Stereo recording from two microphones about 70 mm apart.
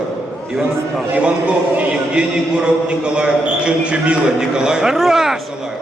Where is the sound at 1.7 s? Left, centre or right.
Centre.